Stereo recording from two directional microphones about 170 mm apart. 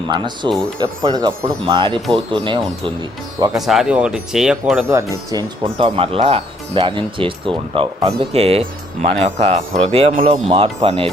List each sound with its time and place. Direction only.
0.1 s speech: 25° right (ahead or behind)
3.5 s speech: centre (ahead or behind)
4.9 s speech: 15° right (ahead or behind)
5.6 s speech: 35° right (ahead or behind)
10.5 s speech: 25° right (ahead or behind)